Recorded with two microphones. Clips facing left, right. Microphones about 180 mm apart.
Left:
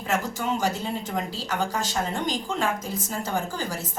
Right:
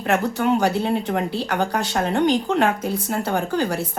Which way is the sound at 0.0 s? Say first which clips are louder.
Right 7 dB; 65° right (ahead or behind).